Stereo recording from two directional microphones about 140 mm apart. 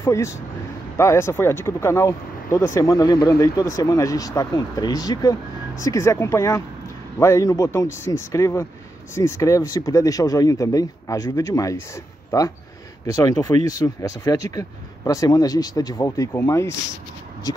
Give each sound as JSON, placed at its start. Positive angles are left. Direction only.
{"t": 0.0, "sound": "speech", "side_deg": 20}